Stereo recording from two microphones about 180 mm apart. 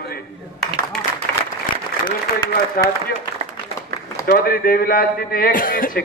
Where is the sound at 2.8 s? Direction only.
55° left (ahead or behind).